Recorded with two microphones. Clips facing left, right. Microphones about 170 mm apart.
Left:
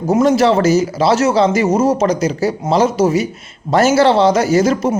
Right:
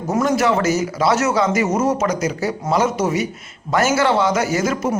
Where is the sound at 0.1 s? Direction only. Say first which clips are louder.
Left 5 dB; 30° left (ahead or behind).